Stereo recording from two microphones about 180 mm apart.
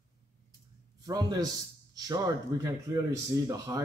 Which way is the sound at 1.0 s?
20° right (ahead or behind).